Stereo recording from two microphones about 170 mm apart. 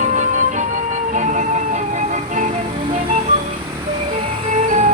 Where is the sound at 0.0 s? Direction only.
50° right (ahead or behind).